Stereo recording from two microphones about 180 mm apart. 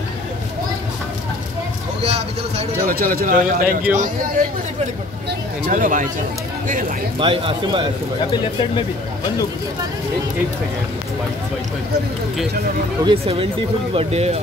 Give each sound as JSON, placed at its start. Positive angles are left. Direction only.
{"t": 2.0, "sound": "speech", "side_deg": -35}
{"t": 2.9, "sound": "a man's voice", "side_deg": -55}
{"t": 5.7, "sound": "a man's voice", "side_deg": -50}
{"t": 7.2, "sound": "speech", "side_deg": -30}
{"t": 13.0, "sound": "speech", "side_deg": -30}